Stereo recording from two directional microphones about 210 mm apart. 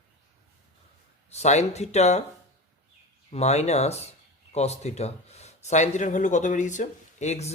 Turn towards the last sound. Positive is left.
turn(degrees=30)  # may be behind; listen again after turning